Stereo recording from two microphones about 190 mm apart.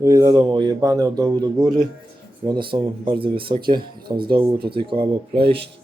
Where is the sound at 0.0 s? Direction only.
20° right (ahead or behind).